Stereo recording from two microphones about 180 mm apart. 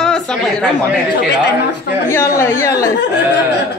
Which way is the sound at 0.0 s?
5° left (ahead or behind).